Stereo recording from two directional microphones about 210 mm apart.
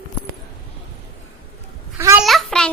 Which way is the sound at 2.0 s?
15° right (ahead or behind).